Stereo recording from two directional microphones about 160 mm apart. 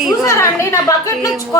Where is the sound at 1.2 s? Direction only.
20° left (ahead or behind).